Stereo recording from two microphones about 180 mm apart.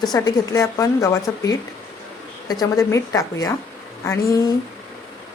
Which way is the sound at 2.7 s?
15° left (ahead or behind).